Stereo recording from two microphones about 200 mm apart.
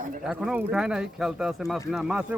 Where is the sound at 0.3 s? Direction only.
5° right (ahead or behind).